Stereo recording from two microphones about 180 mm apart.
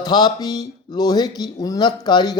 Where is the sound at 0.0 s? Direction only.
25° left (ahead or behind).